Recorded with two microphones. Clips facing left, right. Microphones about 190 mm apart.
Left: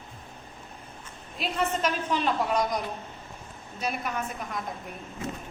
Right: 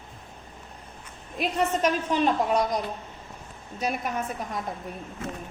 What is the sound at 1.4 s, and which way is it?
A woman's voice, 40° right (ahead or behind).